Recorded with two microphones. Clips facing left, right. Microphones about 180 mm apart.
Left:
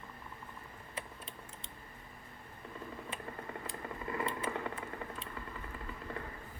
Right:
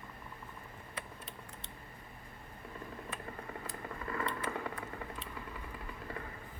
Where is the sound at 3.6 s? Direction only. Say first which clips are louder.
Left 1 dB; 25° left (ahead or behind).